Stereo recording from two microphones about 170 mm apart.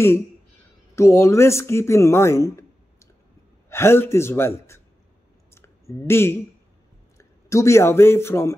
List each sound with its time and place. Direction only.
0.9 s speech: 15° left (ahead or behind)
5.5 s clicking: 15° left (ahead or behind)
7.2 s speech: 20° left (ahead or behind)